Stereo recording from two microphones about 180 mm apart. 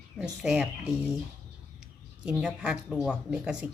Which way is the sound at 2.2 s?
5° right (ahead or behind).